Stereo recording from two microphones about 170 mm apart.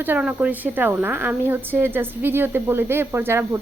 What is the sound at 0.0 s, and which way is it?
A woman's voice, 10° right (ahead or behind).